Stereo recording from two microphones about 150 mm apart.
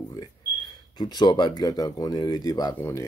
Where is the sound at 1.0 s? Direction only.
30° left (ahead or behind).